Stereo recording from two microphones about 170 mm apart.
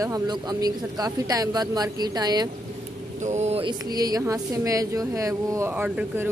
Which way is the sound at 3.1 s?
45° right (ahead or behind).